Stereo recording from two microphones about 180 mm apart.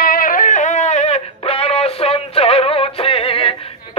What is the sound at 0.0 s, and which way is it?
Music, 50° left (ahead or behind).